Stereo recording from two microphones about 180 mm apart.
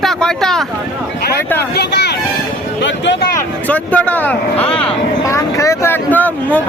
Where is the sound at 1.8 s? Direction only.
70° left (ahead or behind).